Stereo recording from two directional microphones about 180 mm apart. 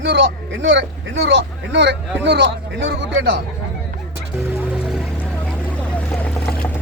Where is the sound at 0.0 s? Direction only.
70° right (ahead or behind).